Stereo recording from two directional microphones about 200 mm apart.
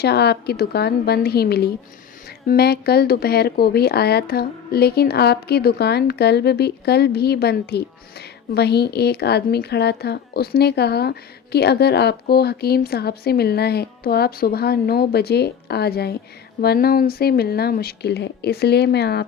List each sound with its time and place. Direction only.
0.0 s speech: 55° left (ahead or behind)